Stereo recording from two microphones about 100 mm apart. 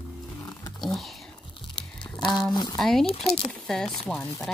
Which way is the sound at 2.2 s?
50° left (ahead or behind).